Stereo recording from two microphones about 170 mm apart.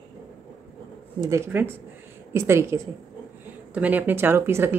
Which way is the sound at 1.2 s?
15° right (ahead or behind).